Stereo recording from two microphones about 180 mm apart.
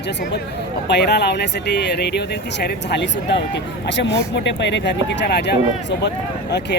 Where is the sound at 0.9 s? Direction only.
70° left (ahead or behind).